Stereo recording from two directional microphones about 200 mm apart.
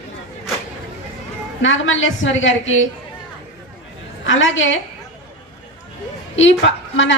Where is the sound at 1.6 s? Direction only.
70° left (ahead or behind).